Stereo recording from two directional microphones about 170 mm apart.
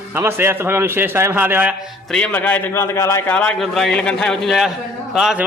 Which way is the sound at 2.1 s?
10° left (ahead or behind).